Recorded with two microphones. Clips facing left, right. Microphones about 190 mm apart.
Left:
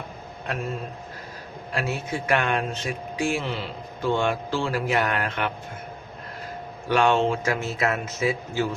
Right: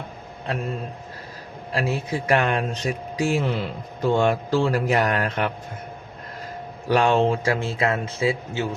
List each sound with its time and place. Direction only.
1.7 s speech: 35° right (ahead or behind)
6.8 s a man's voice: 40° right (ahead or behind)